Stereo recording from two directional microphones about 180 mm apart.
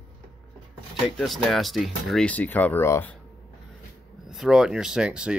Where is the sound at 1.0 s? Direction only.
Centre (ahead or behind).